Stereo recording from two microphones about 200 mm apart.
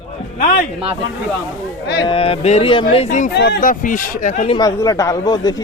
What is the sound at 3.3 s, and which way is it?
Speech, 55° left (ahead or behind).